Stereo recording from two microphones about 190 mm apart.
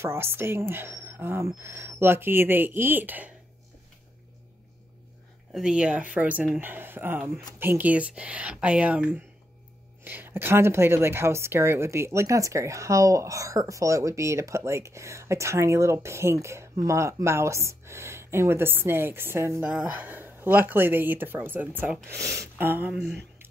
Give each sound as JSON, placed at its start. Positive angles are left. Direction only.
{"t": 0.0, "sound": "a woman's voice", "side_deg": -15}
{"t": 5.5, "sound": "a woman's voice", "side_deg": -5}